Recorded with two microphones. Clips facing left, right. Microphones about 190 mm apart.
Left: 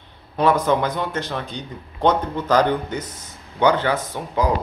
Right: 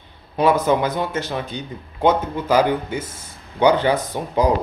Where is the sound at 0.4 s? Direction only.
10° right (ahead or behind).